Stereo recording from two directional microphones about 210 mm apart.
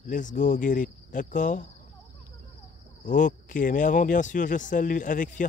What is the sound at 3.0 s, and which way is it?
Speech, 35° left (ahead or behind).